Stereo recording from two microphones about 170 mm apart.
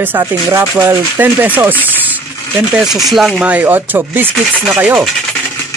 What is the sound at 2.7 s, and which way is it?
Speech, centre (ahead or behind).